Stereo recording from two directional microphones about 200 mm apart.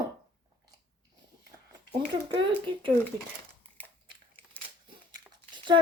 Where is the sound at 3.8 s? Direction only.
10° left (ahead or behind).